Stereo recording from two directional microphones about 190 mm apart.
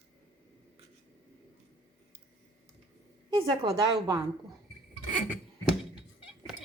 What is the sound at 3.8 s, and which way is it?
Speech, 20° right (ahead or behind).